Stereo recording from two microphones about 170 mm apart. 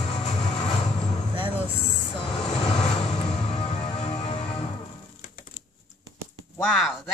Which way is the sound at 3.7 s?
35° left (ahead or behind).